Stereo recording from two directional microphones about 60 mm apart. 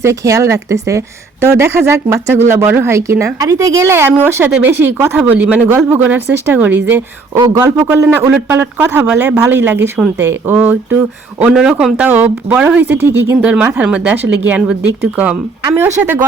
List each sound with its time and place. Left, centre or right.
0.0 s a woman's voice: right
3.8 s a woman's voice: right
5.1 s speech: right
5.6 s speech: right
7.5 s a woman's voice: right
10.5 s a man's voice: centre
10.9 s speech: right
11.5 s a man's voice: centre
11.9 s speech: right
13.0 s a woman's voice: right
13.4 s speech: right